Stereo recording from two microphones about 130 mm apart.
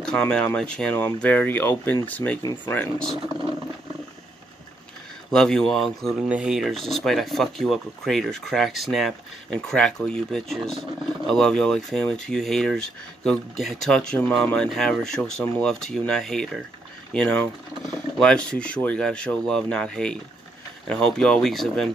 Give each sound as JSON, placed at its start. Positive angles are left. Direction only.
{"t": 0.0, "sound": "speech", "side_deg": 5}
{"t": 3.1, "sound": "speech", "side_deg": -5}
{"t": 3.3, "sound": "wild animals", "side_deg": -25}
{"t": 5.3, "sound": "speech", "side_deg": 5}